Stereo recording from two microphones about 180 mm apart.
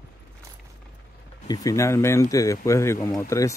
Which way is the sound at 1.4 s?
20° left (ahead or behind).